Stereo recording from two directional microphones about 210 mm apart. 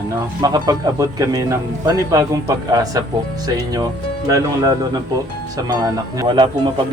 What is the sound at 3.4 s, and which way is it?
Speech, 20° right (ahead or behind).